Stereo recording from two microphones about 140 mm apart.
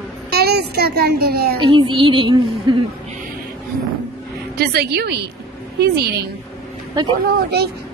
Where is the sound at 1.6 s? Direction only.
35° right (ahead or behind).